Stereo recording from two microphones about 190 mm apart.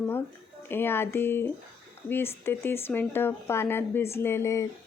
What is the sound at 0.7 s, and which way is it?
Speech, 10° left (ahead or behind).